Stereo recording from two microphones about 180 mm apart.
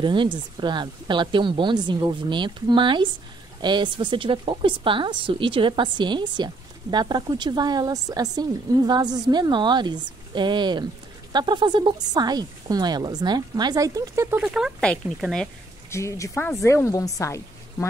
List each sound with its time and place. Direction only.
0.0 s a woman's voice: 25° right (ahead or behind); by 15.4 s centre (ahead or behind)
15.9 s speech: 15° left (ahead or behind)